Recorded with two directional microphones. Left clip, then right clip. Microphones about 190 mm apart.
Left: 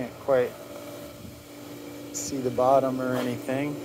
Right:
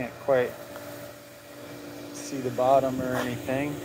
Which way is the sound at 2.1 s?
15° left (ahead or behind).